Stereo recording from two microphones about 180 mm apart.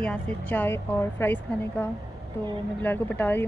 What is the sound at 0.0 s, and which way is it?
Speech, 5° left (ahead or behind).